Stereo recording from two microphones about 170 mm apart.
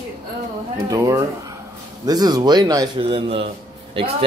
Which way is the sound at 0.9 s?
20° right (ahead or behind).